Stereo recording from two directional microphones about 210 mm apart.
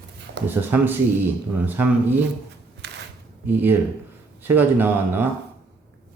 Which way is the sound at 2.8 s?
55° right (ahead or behind).